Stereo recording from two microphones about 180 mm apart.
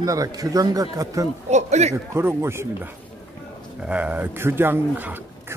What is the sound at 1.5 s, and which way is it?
Speech, 40° right (ahead or behind).